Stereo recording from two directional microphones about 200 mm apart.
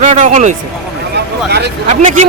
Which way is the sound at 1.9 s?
35° right (ahead or behind).